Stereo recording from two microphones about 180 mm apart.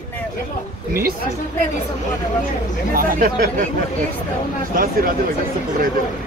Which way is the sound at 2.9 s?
50° right (ahead or behind).